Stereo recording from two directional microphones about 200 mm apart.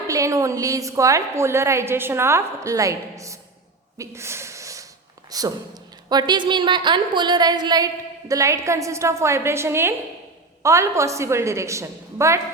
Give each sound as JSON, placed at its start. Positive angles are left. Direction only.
{"t": 0.1, "sound": "a woman's voice", "side_deg": -15}
{"t": 3.9, "sound": "a sound", "side_deg": -15}
{"t": 5.3, "sound": "a woman's voice", "side_deg": -20}